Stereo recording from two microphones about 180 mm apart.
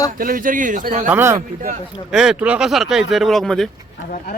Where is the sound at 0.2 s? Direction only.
50° right (ahead or behind).